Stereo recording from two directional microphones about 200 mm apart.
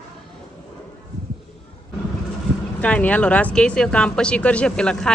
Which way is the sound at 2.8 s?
5° left (ahead or behind).